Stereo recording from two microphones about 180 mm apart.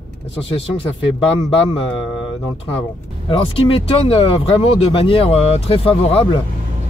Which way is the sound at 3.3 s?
30° left (ahead or behind).